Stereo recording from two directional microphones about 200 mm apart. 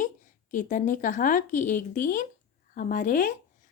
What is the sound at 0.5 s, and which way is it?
A woman's voice, 40° left (ahead or behind).